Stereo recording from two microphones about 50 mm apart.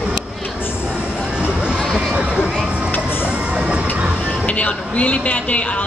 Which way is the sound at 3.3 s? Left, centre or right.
Right.